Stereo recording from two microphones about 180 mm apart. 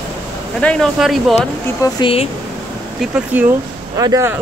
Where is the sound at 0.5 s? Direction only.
5° left (ahead or behind).